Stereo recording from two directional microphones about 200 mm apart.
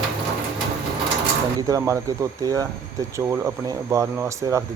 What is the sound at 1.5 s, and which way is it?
Speech, 15° right (ahead or behind).